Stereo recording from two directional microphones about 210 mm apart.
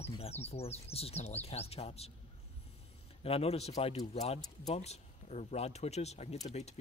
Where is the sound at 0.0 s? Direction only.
30° left (ahead or behind).